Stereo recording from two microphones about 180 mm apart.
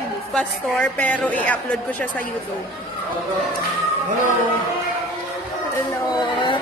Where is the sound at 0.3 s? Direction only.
5° left (ahead or behind).